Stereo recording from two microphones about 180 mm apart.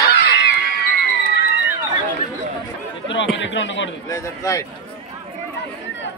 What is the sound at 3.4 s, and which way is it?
Speech, 90° left.